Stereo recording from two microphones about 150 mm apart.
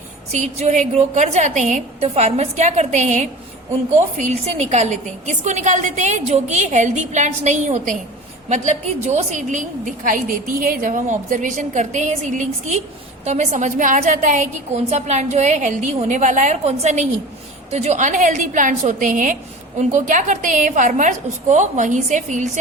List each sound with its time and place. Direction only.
0.3 s a woman's voice: 50° right (ahead or behind)